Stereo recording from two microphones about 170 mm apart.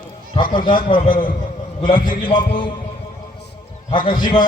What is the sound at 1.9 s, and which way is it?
Speech, 55° left (ahead or behind).